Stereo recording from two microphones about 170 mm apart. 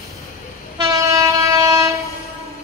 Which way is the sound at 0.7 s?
20° right (ahead or behind).